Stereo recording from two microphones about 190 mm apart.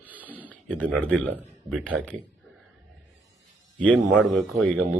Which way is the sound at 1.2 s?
Centre (ahead or behind).